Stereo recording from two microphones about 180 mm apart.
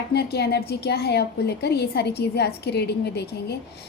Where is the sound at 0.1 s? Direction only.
65° left (ahead or behind).